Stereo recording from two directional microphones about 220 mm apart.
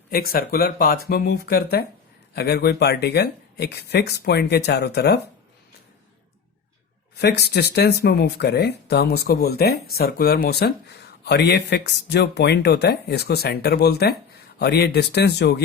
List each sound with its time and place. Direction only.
0.1 s speech: 45° left (ahead or behind)
7.2 s speech: 50° left (ahead or behind)